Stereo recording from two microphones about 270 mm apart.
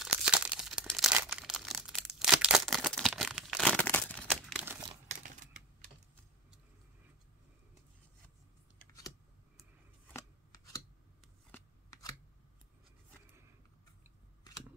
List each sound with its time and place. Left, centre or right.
0.0 s crumpling: centre
5.0 s crumpling: right
10.1 s scissors: centre
11.5 s shuffling cards: centre